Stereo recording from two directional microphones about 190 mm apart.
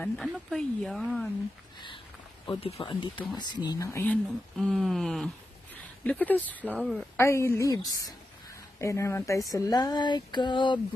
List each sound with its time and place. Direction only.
0.0 s speech: 5° left (ahead or behind)
2.4 s speech: 30° left (ahead or behind); by 7.1 s 5° left (ahead or behind)
7.2 s speech: 15° left (ahead or behind)